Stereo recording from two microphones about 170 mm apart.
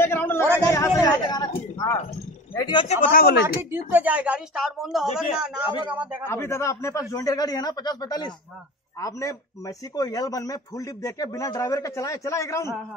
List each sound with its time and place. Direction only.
0.0 s a sound: 15° left (ahead or behind)
2.5 s speech: 25° left (ahead or behind)
2.9 s speech: 55° left (ahead or behind)
3.7 s a woman's voice: 10° right (ahead or behind)
6.2 s speech: 15° left (ahead or behind)